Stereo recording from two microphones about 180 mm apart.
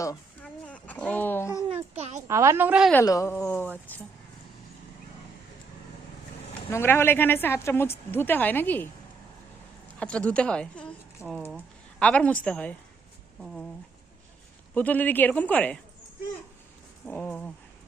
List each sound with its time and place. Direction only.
0.4 s a sound: 5° left (ahead or behind)
1.7 s babbling: 35° right (ahead or behind)
2.2 s a woman's voice: 15° right (ahead or behind)
2.9 s a woman's voice: 20° left (ahead or behind)
6.7 s a woman's voice: 15° left (ahead or behind)
10.0 s a woman's voice: 5° left (ahead or behind)
14.8 s a woman's voice: 10° left (ahead or behind)
17.1 s a woman's voice: 10° left (ahead or behind)